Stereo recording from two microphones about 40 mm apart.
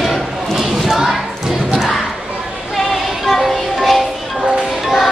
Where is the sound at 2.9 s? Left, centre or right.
Centre.